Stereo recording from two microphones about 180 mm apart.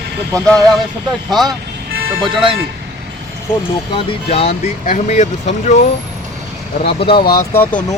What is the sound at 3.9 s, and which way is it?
Speech, 35° left (ahead or behind).